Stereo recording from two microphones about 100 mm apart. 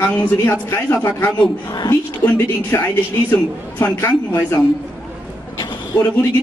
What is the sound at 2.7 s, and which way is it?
Speech, 25° left (ahead or behind).